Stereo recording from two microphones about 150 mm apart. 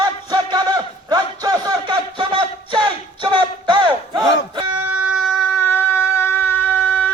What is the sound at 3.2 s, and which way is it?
Battle cry, 30° right (ahead or behind).